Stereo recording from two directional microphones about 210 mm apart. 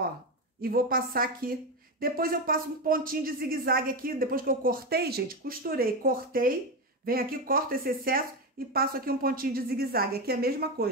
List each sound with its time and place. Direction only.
0.6 s a woman's voice: 45° right (ahead or behind)